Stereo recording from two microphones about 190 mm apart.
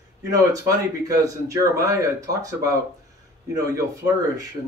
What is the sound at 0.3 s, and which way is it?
A man's voice, 15° right (ahead or behind).